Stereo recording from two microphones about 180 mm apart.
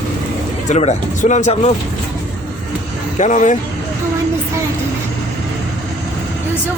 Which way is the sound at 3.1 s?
45° left (ahead or behind).